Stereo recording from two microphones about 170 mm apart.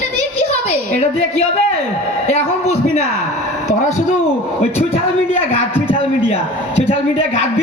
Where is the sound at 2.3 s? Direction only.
40° left (ahead or behind).